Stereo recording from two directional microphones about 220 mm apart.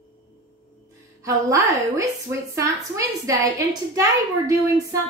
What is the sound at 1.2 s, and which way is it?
A woman's voice, 15° right (ahead or behind).